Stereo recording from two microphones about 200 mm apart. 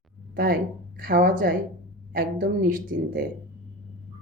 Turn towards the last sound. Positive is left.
turn(degrees=-45)  # may be behind; listen again after turning